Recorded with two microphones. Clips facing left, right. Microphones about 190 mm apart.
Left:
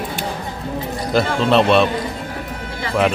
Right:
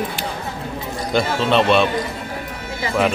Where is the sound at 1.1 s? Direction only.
Centre (ahead or behind).